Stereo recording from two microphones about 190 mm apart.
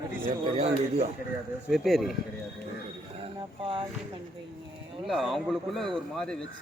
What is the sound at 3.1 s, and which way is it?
Speech, 30° right (ahead or behind).